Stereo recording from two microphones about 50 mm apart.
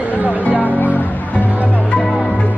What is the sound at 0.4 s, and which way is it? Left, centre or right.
Music, left.